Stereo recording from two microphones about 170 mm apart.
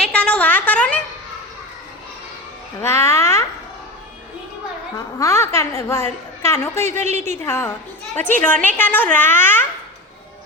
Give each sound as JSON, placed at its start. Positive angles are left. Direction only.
{"t": 0.0, "sound": "a sound", "side_deg": 5}
{"t": 2.8, "sound": "a woman's voice", "side_deg": 15}
{"t": 5.2, "sound": "a woman's voice", "side_deg": 15}
{"t": 7.0, "sound": "a woman's voice", "side_deg": -45}
{"t": 7.4, "sound": "a woman's voice", "side_deg": 15}